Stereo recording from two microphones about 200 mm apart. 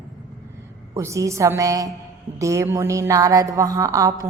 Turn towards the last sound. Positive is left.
turn(degrees=-15)  # may be behind; listen again after turning